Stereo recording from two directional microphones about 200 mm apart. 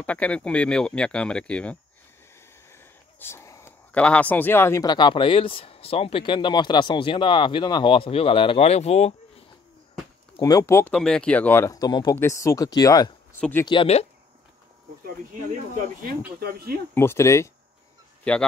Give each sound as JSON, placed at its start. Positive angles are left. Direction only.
{"t": 0.0, "sound": "speech", "side_deg": 5}
{"t": 10.3, "sound": "speech", "side_deg": 15}
{"t": 13.7, "sound": "speech", "side_deg": 30}
{"t": 15.0, "sound": "speech", "side_deg": -45}
{"t": 16.9, "sound": "speech", "side_deg": 10}